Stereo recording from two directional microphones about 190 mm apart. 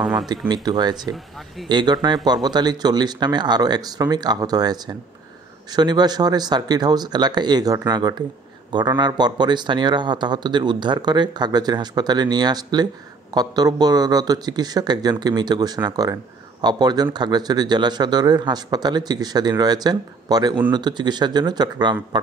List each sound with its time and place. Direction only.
0.5 s speech: 20° right (ahead or behind)